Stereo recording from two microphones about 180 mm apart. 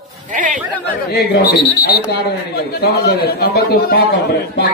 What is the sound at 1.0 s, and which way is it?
Speech, 60° left (ahead or behind).